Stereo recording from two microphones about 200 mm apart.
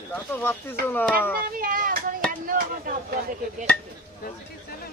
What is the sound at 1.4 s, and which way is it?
Speech, 45° right (ahead or behind).